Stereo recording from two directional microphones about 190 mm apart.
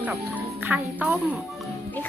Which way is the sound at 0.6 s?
5° right (ahead or behind).